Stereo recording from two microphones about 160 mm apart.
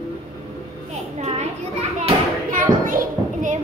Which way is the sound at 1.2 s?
40° right (ahead or behind).